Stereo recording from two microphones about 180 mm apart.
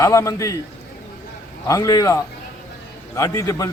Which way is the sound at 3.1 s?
15° left (ahead or behind).